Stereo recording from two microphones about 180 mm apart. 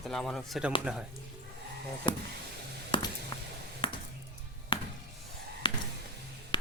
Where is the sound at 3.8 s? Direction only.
30° left (ahead or behind).